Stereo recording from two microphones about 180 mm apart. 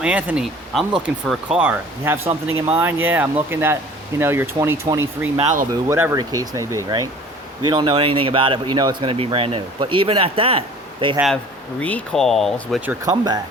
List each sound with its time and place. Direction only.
0.0 s speech: 10° right (ahead or behind)
5.4 s speech: 40° right (ahead or behind)
5.9 s speech: 15° right (ahead or behind); by 10.6 s 30° right (ahead or behind)
11.8 s speech: 5° left (ahead or behind)
13.1 s speech: 20° right (ahead or behind)